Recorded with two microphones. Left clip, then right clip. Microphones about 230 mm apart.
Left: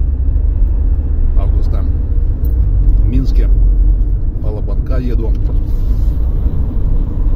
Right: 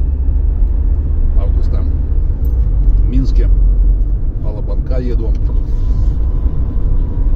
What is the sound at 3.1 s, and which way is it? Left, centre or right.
Vehicle, left.